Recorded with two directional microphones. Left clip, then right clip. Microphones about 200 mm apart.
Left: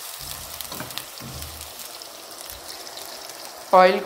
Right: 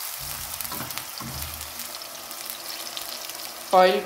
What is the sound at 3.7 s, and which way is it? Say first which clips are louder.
Speech: left 3 dB; 5° left (ahead or behind).